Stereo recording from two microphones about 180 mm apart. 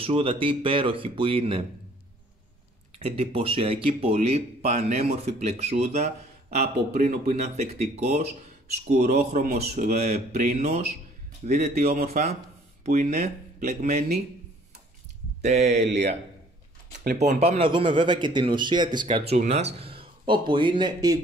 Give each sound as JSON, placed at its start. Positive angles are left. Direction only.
{"t": 0.0, "sound": "speech", "side_deg": -30}
{"t": 3.0, "sound": "speech", "side_deg": -35}
{"t": 11.7, "sound": "a man's voice", "side_deg": -55}
{"t": 12.8, "sound": "speech", "side_deg": -45}
{"t": 15.4, "sound": "speech", "side_deg": -40}
{"t": 15.8, "sound": "speech", "side_deg": -70}
{"t": 17.0, "sound": "speech", "side_deg": -40}